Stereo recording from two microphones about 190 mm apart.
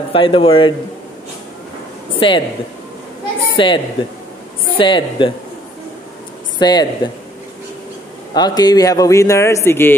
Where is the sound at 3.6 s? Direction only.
25° left (ahead or behind).